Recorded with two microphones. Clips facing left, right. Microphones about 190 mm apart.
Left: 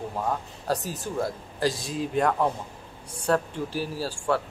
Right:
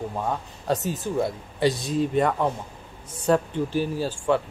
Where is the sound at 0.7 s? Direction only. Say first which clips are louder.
Right 3 dB; centre (ahead or behind).